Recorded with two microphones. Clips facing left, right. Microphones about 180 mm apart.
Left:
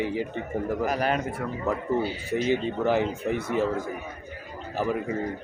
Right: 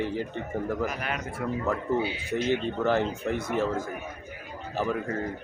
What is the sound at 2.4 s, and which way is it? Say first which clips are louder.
Speech: left 1 dB; 10° left (ahead or behind).